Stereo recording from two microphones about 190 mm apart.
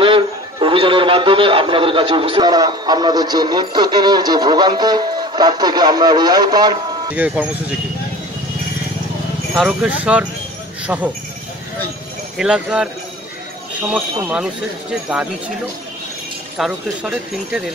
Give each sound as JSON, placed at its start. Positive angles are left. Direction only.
{"t": 0.0, "sound": "a man's voice", "side_deg": -25}
{"t": 7.1, "sound": "speech", "side_deg": -10}
{"t": 9.6, "sound": "speech", "side_deg": -5}
{"t": 12.4, "sound": "speech", "side_deg": -5}
{"t": 14.2, "sound": "speech", "side_deg": -5}
{"t": 16.5, "sound": "speech", "side_deg": -5}